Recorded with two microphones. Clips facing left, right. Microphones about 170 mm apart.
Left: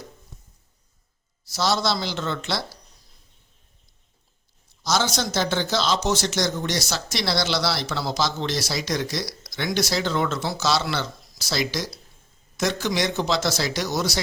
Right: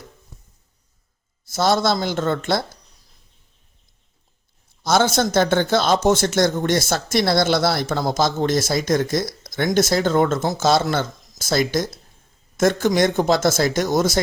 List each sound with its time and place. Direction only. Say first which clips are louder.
1.5 s speech: right 5 dB; 50° right (ahead or behind)
4.8 s speech: right 6 dB; 55° right (ahead or behind)